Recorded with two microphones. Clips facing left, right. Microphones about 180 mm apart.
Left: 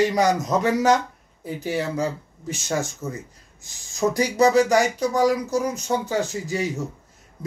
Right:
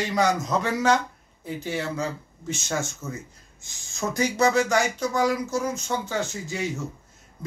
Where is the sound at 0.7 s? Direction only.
40° left (ahead or behind).